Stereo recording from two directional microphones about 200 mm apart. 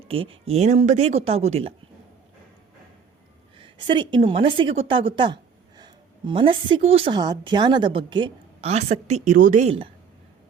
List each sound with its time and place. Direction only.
0.1 s speech: 30° right (ahead or behind)
3.6 s a woman's voice: 25° right (ahead or behind)